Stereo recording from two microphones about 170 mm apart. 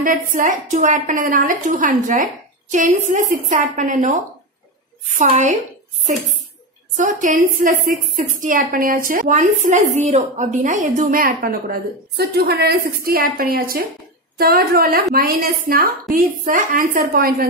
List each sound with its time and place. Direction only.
0.0 s a woman's voice: 50° right (ahead or behind)
7.0 s a woman's voice: 50° right (ahead or behind)